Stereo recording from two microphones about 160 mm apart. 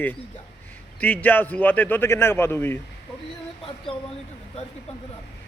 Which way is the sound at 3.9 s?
35° left (ahead or behind).